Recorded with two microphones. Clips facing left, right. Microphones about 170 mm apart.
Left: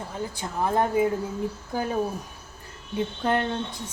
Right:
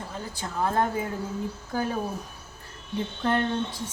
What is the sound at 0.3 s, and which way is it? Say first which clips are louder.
Speech: left 1 dB; 15° left (ahead or behind).